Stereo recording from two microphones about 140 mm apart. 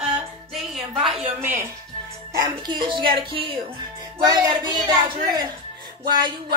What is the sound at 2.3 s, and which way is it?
Music, 30° right (ahead or behind).